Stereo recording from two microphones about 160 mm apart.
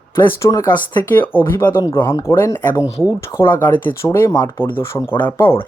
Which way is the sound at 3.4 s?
15° left (ahead or behind).